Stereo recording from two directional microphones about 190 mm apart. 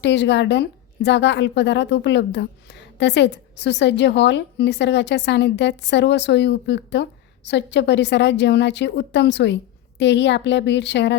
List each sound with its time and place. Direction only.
0.0 s a woman's voice: 65° left (ahead or behind)